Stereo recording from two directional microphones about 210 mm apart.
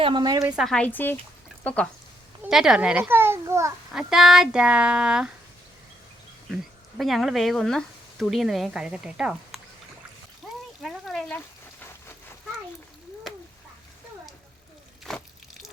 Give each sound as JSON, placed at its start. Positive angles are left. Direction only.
{"t": 0.0, "sound": "a woman's voice", "side_deg": -20}
{"t": 0.5, "sound": "a child's voice", "side_deg": 0}
{"t": 3.9, "sound": "speech", "side_deg": 0}
{"t": 6.5, "sound": "speech", "side_deg": 0}
{"t": 10.4, "sound": "a sound", "side_deg": -5}
{"t": 10.8, "sound": "rain", "side_deg": 0}
{"t": 15.1, "sound": "water", "side_deg": 0}